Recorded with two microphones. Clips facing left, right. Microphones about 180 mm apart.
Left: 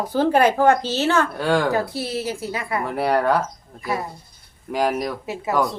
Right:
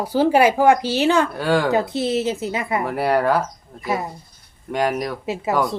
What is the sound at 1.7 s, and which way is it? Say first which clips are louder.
Speech: right 4 dB; 20° right (ahead or behind).